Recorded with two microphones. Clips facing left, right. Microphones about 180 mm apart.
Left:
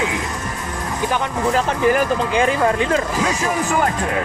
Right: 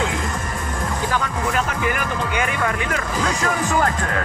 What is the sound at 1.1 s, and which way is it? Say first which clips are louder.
Speech: left 5 dB; 25° left (ahead or behind).